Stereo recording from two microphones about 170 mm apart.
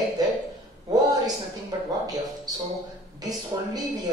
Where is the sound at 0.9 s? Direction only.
20° right (ahead or behind).